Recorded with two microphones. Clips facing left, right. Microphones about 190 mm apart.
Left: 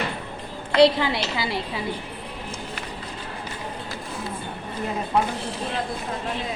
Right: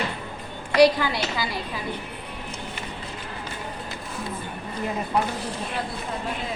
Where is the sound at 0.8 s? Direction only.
25° left (ahead or behind).